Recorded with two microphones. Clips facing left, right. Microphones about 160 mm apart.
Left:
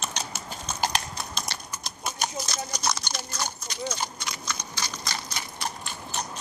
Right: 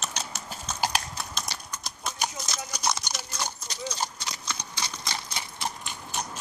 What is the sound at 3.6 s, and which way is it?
Horse, 35° right (ahead or behind).